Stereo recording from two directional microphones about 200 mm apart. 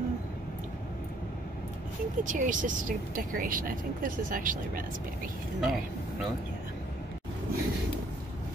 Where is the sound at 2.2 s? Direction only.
40° right (ahead or behind).